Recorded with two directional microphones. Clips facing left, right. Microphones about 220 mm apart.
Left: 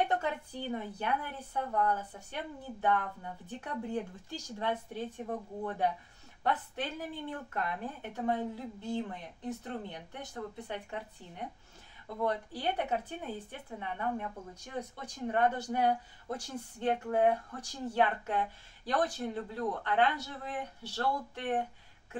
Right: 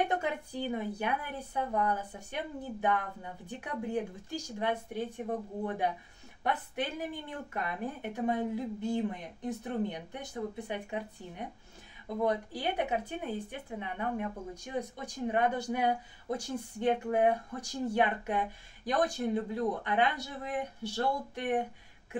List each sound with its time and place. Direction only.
0.1 s speech: 15° right (ahead or behind)
6.4 s speech: 15° right (ahead or behind)